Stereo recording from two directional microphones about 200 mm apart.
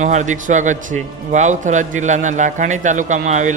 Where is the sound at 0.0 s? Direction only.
35° right (ahead or behind).